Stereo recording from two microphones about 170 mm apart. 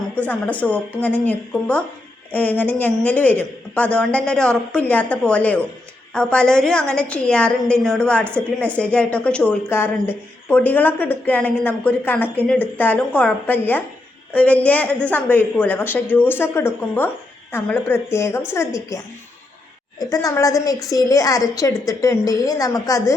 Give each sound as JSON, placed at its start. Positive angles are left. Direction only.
{"t": 0.2, "sound": "a woman's voice", "side_deg": 10}